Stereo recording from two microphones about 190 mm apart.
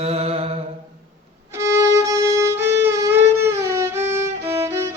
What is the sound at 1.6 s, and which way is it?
Violin, 15° right (ahead or behind).